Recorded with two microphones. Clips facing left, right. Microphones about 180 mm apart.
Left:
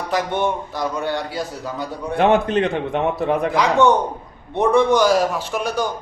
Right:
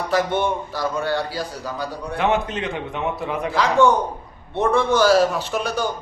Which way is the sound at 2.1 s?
55° left (ahead or behind).